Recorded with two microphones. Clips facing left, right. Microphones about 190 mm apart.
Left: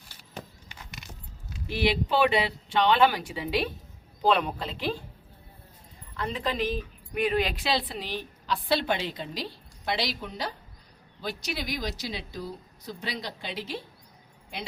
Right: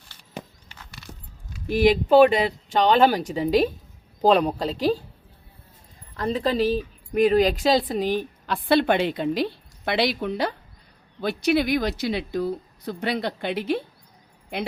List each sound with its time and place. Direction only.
1.6 s a woman's voice: 45° right (ahead or behind)
6.1 s speech: 35° right (ahead or behind); by 14.7 s 60° right (ahead or behind)